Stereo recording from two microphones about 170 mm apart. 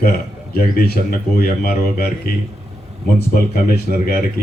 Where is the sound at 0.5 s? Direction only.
60° left (ahead or behind).